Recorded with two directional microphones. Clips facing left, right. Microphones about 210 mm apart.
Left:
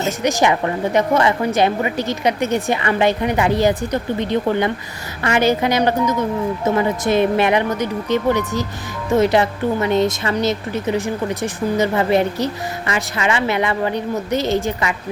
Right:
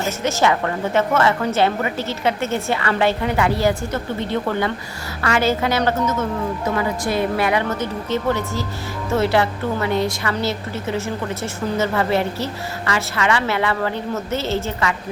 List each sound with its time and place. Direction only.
0.2 s speech: 15° left (ahead or behind)